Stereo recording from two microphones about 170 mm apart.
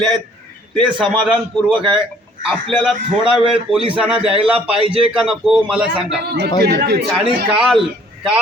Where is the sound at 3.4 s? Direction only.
30° right (ahead or behind).